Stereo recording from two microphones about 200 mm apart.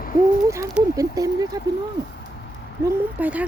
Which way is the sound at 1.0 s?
15° right (ahead or behind).